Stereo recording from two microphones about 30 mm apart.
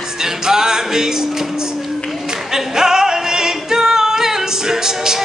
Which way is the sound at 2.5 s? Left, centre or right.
Centre.